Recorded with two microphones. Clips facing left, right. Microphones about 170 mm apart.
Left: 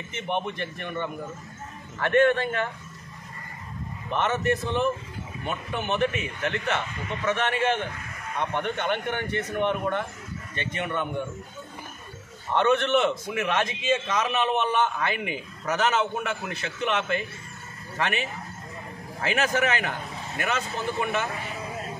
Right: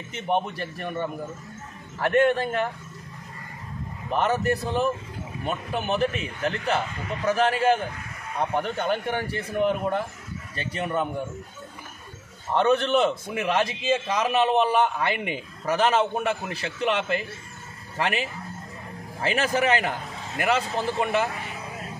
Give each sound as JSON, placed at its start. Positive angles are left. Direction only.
{"t": 0.3, "sound": "a man's voice", "side_deg": -35}
{"t": 4.1, "sound": "a man's voice", "side_deg": -35}
{"t": 12.5, "sound": "a man's voice", "side_deg": -35}
{"t": 19.2, "sound": "a man's voice", "side_deg": -30}